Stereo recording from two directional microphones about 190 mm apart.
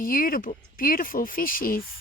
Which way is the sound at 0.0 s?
45° left (ahead or behind).